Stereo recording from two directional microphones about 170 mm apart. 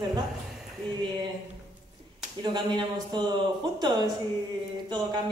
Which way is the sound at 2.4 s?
25° right (ahead or behind).